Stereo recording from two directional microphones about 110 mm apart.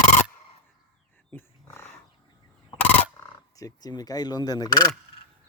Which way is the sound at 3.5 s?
35° left (ahead or behind).